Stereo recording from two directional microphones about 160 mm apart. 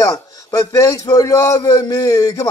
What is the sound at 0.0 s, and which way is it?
Music, 20° left (ahead or behind).